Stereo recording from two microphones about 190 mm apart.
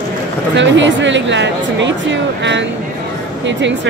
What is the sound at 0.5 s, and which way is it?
Speech, 75° right (ahead or behind).